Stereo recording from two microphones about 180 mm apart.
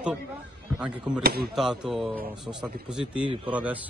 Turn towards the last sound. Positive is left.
turn(degrees=-5)  # may be behind; listen again after turning